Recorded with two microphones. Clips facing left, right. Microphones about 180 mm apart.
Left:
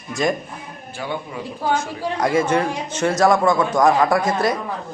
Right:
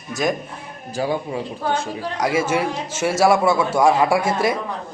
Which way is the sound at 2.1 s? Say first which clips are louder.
Left 2 dB; 5° right (ahead or behind).